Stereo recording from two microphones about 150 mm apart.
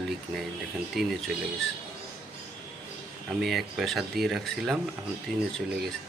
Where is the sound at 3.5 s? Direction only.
Centre (ahead or behind).